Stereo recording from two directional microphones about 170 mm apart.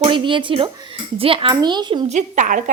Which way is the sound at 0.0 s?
30° right (ahead or behind).